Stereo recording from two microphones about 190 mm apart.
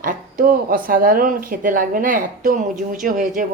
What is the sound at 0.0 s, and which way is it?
Speech, 45° right (ahead or behind).